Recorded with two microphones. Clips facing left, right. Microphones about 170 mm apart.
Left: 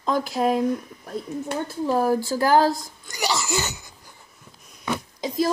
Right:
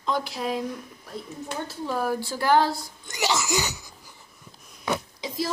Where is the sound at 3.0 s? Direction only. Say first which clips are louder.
Right 2 dB; 20° right (ahead or behind).